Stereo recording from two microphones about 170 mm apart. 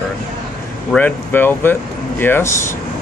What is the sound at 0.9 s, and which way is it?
Speech, 10° left (ahead or behind).